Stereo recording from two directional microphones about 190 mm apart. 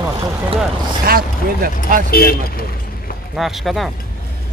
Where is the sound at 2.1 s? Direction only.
50° left (ahead or behind).